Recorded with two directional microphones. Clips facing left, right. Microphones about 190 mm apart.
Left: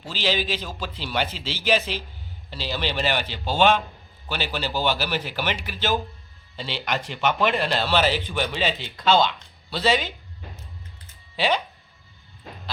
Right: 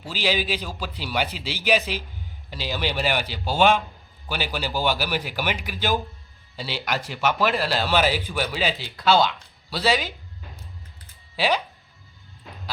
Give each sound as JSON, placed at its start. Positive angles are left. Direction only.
{"t": 0.0, "sound": "speech", "side_deg": -10}
{"t": 11.3, "sound": "speech", "side_deg": -5}